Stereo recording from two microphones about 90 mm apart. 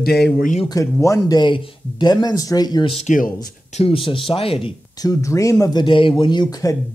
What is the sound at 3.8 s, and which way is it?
Speech, 75° left (ahead or behind).